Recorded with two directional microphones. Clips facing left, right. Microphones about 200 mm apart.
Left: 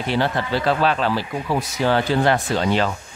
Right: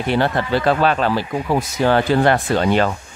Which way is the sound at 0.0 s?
55° right (ahead or behind).